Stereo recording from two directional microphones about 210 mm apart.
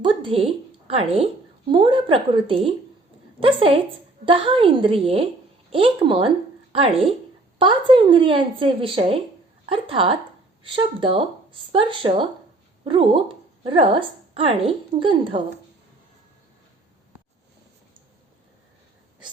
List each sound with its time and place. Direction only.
0.0 s a woman's voice: 25° right (ahead or behind)